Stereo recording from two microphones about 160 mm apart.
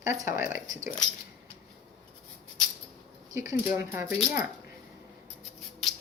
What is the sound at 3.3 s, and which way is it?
Speech, 20° right (ahead or behind).